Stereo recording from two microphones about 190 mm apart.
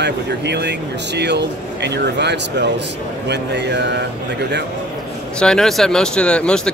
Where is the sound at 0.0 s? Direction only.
60° right (ahead or behind).